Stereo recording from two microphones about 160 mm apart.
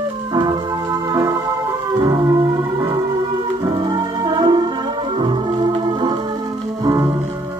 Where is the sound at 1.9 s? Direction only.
25° right (ahead or behind).